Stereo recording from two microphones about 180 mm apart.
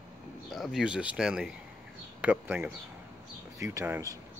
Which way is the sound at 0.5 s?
Centre (ahead or behind).